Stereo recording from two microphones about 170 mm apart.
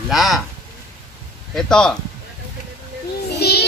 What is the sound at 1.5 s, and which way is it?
Speech, 5° left (ahead or behind).